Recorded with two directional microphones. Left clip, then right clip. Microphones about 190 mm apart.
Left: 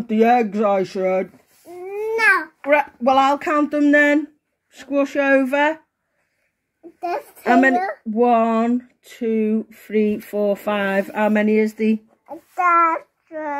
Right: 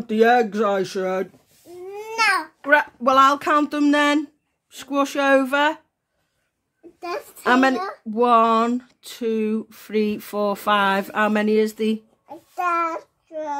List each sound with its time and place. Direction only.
0.0 s speech: 20° right (ahead or behind)
1.5 s baby cry: 15° left (ahead or behind)
1.8 s babbling: 15° right (ahead or behind)
3.7 s speech: 25° right (ahead or behind)
7.4 s speech: 30° right (ahead or behind)
12.4 s child singing: 25° left (ahead or behind)